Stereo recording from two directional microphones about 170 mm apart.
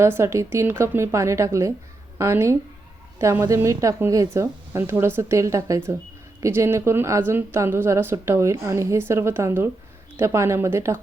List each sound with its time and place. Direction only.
0.0 s a woman's voice: 15° right (ahead or behind)